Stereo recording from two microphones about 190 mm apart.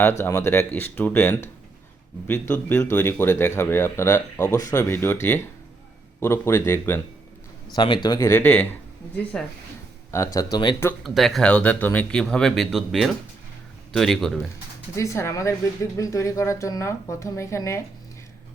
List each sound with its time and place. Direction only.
0.2 s speech: 15° left (ahead or behind)
6.1 s speech: 15° left (ahead or behind)
7.8 s speech: 25° left (ahead or behind); by 9.5 s 5° left (ahead or behind)
10.3 s speech: 20° left (ahead or behind)
11.0 s speech: centre (ahead or behind)
14.9 s speech: 15° left (ahead or behind)